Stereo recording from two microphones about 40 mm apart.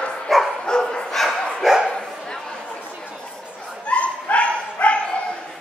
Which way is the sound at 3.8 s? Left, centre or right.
Left.